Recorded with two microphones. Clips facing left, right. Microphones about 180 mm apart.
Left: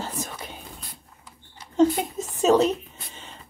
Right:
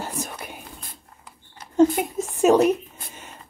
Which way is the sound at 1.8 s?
10° right (ahead or behind).